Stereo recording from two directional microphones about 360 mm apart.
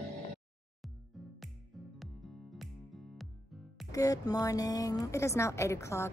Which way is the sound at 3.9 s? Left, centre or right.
Centre.